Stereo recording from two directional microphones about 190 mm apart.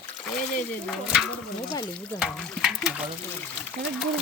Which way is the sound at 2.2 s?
Centre (ahead or behind).